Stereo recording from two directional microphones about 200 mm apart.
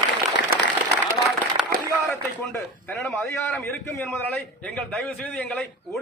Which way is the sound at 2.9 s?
10° left (ahead or behind).